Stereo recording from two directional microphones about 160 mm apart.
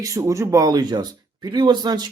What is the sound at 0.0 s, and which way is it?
Speech, 20° right (ahead or behind).